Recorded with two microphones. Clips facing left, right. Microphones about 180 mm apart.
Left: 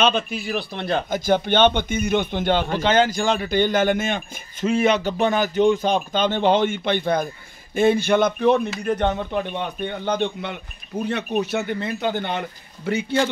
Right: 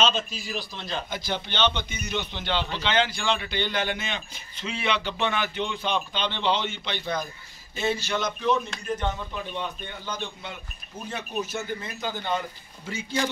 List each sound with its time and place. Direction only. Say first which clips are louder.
0.0 s a man's voice: left 5 dB; 60° left (ahead or behind)